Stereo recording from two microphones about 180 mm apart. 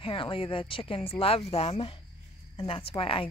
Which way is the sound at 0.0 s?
30° left (ahead or behind).